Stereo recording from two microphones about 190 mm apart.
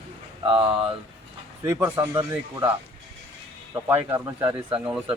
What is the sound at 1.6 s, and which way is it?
Speech, 15° right (ahead or behind).